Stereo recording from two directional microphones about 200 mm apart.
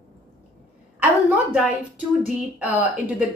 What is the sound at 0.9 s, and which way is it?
A woman's voice, 5° right (ahead or behind).